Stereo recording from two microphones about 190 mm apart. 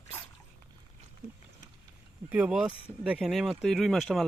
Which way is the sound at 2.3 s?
5° right (ahead or behind).